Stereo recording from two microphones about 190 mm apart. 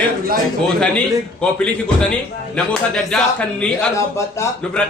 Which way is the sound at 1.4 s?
5° left (ahead or behind).